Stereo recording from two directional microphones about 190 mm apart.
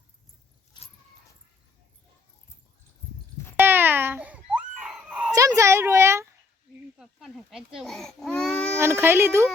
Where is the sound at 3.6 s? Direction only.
10° right (ahead or behind).